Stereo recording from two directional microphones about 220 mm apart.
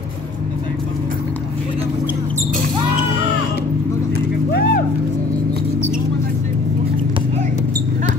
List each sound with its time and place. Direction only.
4.5 s music: 45° left (ahead or behind)